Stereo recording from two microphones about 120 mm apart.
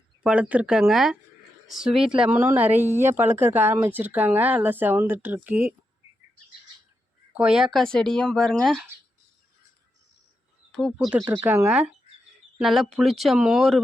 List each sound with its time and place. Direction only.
0.2 s speech: 10° right (ahead or behind)
7.3 s speech: 5° right (ahead or behind)
10.7 s a sound: centre (ahead or behind)
11.4 s speech: 20° right (ahead or behind)
12.5 s speech: centre (ahead or behind)